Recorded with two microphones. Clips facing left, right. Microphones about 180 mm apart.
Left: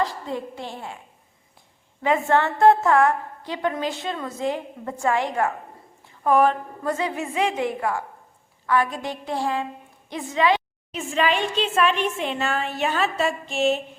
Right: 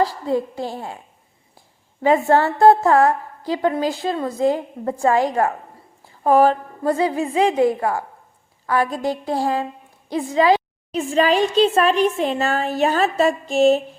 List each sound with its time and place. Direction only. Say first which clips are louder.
0.0 s a woman's voice: right 7 dB; 35° right (ahead or behind)
2.0 s a woman's voice: right 5 dB; 35° right (ahead or behind)